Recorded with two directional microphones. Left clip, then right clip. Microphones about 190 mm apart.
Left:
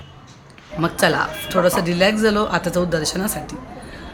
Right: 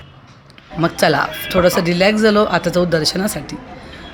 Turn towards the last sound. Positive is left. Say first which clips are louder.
# right 4 dB
turn(degrees=-20)  # may be behind; listen again after turning